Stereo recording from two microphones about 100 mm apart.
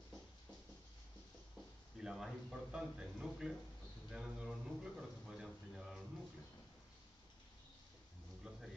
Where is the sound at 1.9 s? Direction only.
5° right (ahead or behind).